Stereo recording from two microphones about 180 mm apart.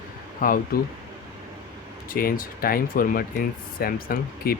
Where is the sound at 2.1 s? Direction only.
50° left (ahead or behind).